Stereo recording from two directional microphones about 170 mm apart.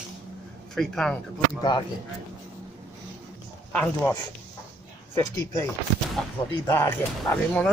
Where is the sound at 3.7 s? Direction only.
10° left (ahead or behind).